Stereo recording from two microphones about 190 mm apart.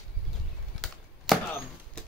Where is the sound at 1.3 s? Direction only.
Centre (ahead or behind).